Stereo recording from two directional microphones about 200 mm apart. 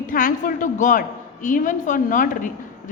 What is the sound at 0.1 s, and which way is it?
A woman's voice, 45° left (ahead or behind).